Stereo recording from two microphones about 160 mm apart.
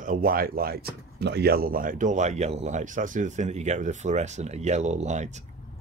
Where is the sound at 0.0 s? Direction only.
60° right (ahead or behind).